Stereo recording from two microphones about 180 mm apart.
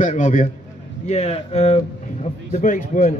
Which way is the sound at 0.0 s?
45° left (ahead or behind).